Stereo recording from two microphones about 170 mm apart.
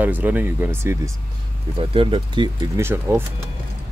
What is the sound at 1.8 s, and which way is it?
Speech, 30° right (ahead or behind).